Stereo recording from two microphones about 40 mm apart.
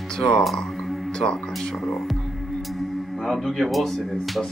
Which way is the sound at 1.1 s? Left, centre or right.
Centre.